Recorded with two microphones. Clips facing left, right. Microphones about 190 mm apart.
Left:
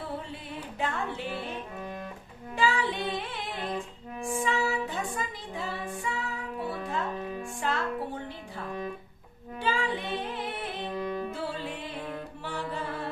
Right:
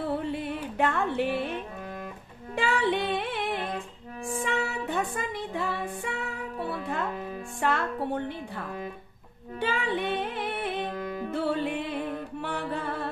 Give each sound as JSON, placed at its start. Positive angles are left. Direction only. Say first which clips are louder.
{"t": 0.2, "sound": "music", "louder": "right 8 dB", "side_deg": -60}
{"t": 2.6, "sound": "music", "louder": "right 2 dB", "side_deg": -60}
{"t": 7.6, "sound": "music", "louder": "right 4 dB", "side_deg": -60}